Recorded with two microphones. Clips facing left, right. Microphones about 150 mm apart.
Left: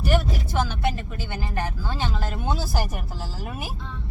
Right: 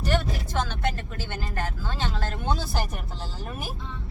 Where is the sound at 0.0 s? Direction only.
10° left (ahead or behind).